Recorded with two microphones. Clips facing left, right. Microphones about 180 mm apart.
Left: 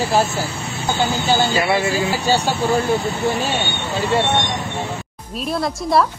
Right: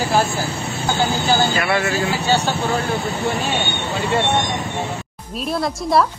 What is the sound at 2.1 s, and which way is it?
Speech, 40° left (ahead or behind).